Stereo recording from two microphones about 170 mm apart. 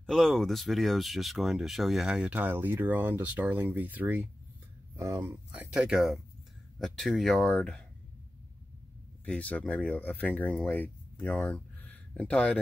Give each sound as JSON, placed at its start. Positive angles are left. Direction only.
{"t": 0.0, "sound": "speech", "side_deg": 0}
{"t": 5.5, "sound": "speech", "side_deg": -5}
{"t": 9.2, "sound": "speech", "side_deg": 5}